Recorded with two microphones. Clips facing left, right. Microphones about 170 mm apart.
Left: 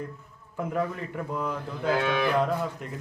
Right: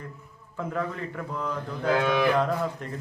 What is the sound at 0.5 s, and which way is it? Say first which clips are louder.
A man's voice: left 2 dB; 15° left (ahead or behind).